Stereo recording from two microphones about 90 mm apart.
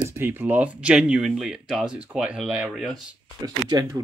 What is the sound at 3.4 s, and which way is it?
Speech, 45° right (ahead or behind).